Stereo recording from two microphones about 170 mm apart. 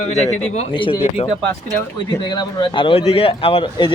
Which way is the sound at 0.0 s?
40° left (ahead or behind).